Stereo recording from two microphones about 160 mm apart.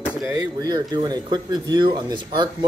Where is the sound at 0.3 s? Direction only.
25° right (ahead or behind).